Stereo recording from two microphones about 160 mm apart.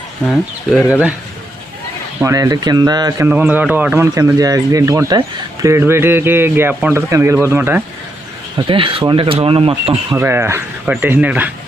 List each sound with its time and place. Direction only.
0.3 s speech: 10° left (ahead or behind)
2.2 s speech: 20° right (ahead or behind)
3.2 s speech: 10° right (ahead or behind)
8.5 s speech: 30° right (ahead or behind)
10.2 s speech: 15° right (ahead or behind)